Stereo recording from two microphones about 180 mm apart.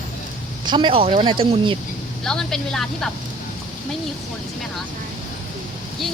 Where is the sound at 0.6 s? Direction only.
25° right (ahead or behind).